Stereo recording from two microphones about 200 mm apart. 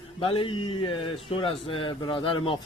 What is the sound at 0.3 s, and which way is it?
Speech, 25° left (ahead or behind).